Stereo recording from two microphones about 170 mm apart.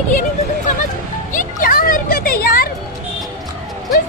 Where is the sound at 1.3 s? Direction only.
55° left (ahead or behind).